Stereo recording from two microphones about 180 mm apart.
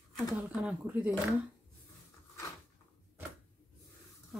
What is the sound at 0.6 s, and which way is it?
Speech, 5° right (ahead or behind).